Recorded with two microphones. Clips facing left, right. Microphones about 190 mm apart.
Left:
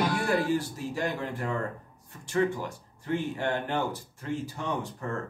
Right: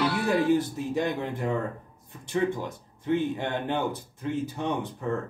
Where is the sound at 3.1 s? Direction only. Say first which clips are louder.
Right 2 dB; 20° right (ahead or behind).